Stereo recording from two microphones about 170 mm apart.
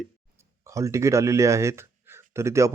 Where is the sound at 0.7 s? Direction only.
20° right (ahead or behind).